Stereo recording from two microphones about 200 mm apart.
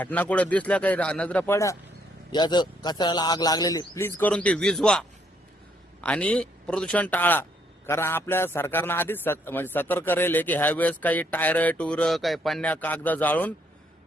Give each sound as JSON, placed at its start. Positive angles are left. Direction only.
{"t": 0.0, "sound": "a man's voice", "side_deg": 10}